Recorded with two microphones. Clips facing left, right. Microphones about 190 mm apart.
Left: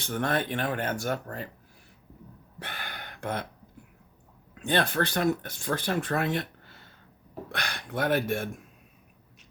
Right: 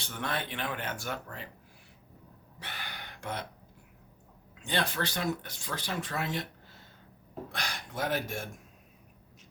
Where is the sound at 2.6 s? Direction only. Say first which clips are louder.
Left 4 dB; 55° left (ahead or behind).